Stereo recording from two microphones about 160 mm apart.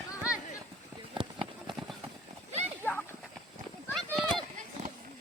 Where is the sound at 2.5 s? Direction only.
45° right (ahead or behind).